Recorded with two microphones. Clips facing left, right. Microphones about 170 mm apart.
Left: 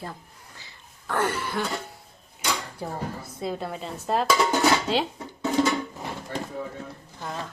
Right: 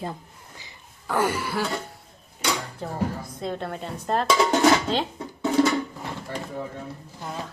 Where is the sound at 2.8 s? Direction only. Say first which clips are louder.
Right 4 dB; 10° left (ahead or behind).